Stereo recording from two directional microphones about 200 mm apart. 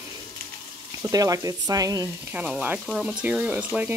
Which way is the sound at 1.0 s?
15° right (ahead or behind).